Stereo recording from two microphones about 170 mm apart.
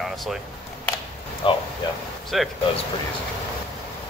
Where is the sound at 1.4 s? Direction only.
30° left (ahead or behind).